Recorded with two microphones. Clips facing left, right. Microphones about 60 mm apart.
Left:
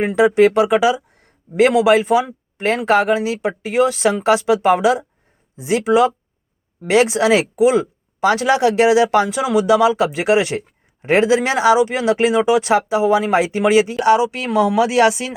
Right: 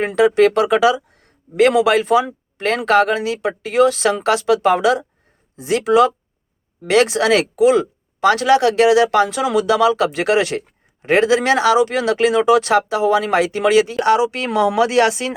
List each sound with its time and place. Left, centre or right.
0.2 s speech: centre
14.2 s speech: centre